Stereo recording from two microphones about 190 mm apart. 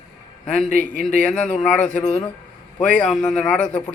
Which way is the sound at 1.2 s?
5° left (ahead or behind).